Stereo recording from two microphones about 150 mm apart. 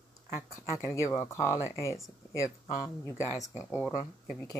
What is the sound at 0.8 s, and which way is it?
Speech, 20° left (ahead or behind).